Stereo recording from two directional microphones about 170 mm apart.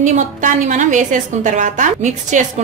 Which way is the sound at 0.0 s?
45° right (ahead or behind).